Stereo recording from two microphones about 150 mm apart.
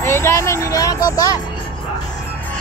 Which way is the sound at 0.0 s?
15° left (ahead or behind).